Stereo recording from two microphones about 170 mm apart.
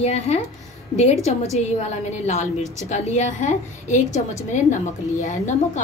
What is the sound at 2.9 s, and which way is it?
A woman's voice, 45° left (ahead or behind).